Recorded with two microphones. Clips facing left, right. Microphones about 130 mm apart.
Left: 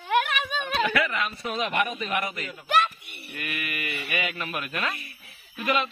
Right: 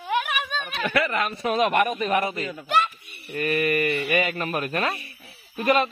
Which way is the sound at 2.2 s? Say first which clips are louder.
Right 5 dB; 30° right (ahead or behind).